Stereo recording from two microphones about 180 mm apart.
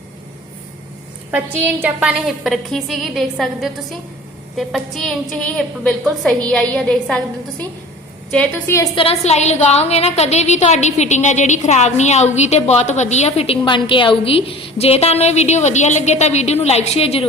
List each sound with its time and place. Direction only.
1.3 s a woman's voice: 10° right (ahead or behind)
8.3 s a woman's voice: 5° left (ahead or behind)
9.0 s a woman's voice: 35° left (ahead or behind)